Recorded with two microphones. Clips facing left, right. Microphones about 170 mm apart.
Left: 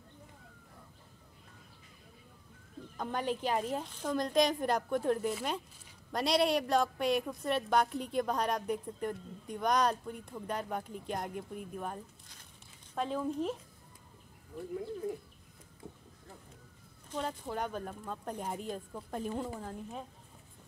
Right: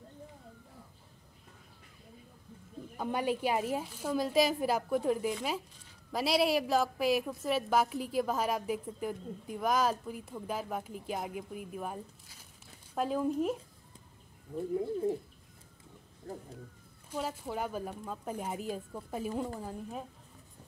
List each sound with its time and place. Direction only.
3.0 s a woman's voice: 10° right (ahead or behind)
14.8 s bird: 30° right (ahead or behind)
17.1 s a woman's voice: 5° right (ahead or behind)